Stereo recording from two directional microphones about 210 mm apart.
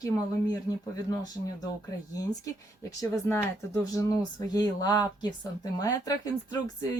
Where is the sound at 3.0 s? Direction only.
10° left (ahead or behind).